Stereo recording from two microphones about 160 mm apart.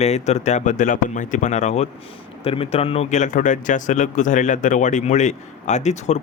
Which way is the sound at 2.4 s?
35° left (ahead or behind).